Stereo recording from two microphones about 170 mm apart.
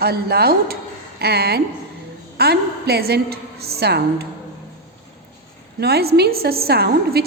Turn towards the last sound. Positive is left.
turn(degrees=-65)  # may be behind; listen again after turning